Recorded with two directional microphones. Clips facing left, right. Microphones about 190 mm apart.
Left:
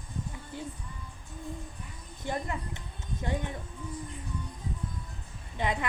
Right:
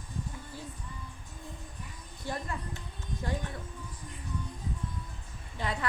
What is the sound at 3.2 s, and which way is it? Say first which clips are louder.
Music: left 2 dB; 20° left (ahead or behind).